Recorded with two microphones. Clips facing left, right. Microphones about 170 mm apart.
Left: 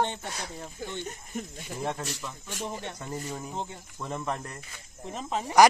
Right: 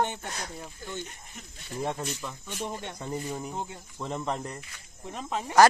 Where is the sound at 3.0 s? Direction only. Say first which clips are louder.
Right 2 dB; 15° right (ahead or behind).